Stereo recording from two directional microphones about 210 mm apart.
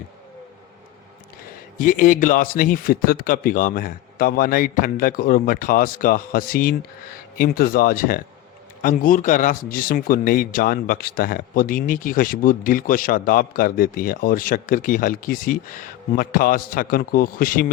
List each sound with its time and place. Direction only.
1.8 s speech: 40° left (ahead or behind)